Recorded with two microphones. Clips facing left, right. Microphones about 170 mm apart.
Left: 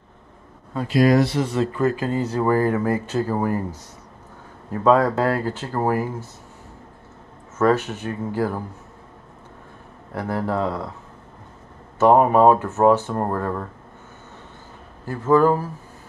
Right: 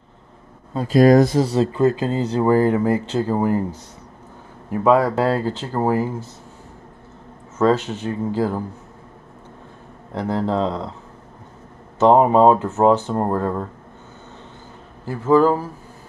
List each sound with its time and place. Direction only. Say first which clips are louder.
0.9 s speech: right 4 dB; 45° right (ahead or behind); by 3.6 s 20° right (ahead or behind)
4.6 s speech: right 1 dB; 15° right (ahead or behind)
7.5 s speech: right 1 dB; 15° right (ahead or behind)
10.1 s speech: right 3 dB; 20° right (ahead or behind)
12.0 s speech: right 1 dB; 20° right (ahead or behind)
15.0 s speech: right 1 dB; 10° right (ahead or behind)